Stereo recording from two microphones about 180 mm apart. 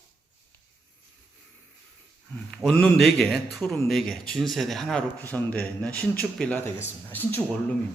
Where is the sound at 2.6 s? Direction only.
5° left (ahead or behind).